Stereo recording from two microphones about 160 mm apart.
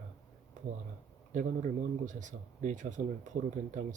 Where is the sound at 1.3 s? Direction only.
50° right (ahead or behind).